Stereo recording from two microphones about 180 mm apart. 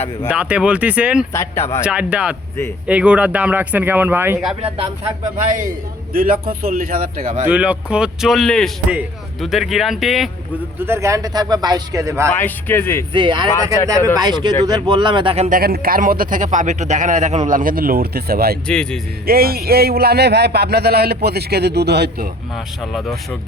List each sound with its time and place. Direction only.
0.3 s speech: 5° right (ahead or behind)
1.3 s speech: 15° left (ahead or behind)
1.8 s speech: 5° right (ahead or behind)
6.1 s a man's voice: 55° right (ahead or behind)
7.4 s a man's voice: 10° right (ahead or behind)
10.8 s speech: 15° right (ahead or behind)
12.3 s speech: 10° left (ahead or behind)
13.1 s speech: 25° right (ahead or behind)
15.4 s a man's voice: 55° right (ahead or behind)
18.7 s a man's voice: 5° left (ahead or behind)
19.2 s speech: 55° right (ahead or behind)
22.5 s a man's voice: centre (ahead or behind)